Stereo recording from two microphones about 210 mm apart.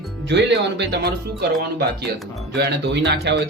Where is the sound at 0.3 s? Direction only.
55° right (ahead or behind).